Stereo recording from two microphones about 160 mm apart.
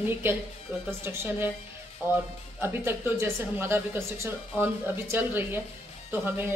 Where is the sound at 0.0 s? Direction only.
15° right (ahead or behind).